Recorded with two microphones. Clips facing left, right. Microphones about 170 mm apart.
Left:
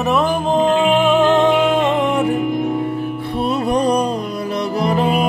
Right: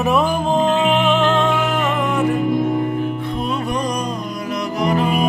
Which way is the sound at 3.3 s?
35° left (ahead or behind).